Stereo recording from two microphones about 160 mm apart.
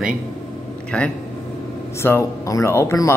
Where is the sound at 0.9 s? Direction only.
5° left (ahead or behind).